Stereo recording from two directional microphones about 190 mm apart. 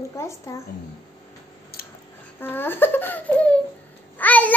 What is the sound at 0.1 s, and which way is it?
Speech, 15° left (ahead or behind).